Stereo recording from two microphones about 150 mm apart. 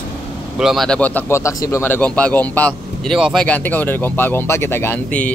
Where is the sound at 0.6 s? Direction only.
Centre (ahead or behind).